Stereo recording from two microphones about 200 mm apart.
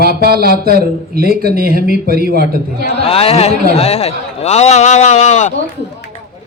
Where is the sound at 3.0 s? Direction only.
30° left (ahead or behind).